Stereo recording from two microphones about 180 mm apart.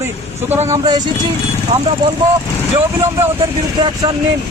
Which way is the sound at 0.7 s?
20° right (ahead or behind).